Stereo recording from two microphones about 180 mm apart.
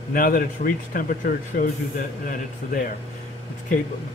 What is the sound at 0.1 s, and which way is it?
Speech, 50° left (ahead or behind).